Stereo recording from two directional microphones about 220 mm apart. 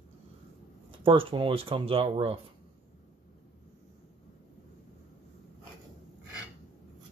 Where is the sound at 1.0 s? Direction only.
25° right (ahead or behind).